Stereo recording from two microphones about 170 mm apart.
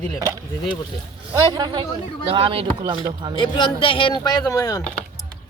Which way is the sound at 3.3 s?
30° left (ahead or behind).